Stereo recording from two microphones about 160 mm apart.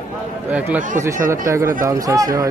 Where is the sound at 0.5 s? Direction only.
10° right (ahead or behind).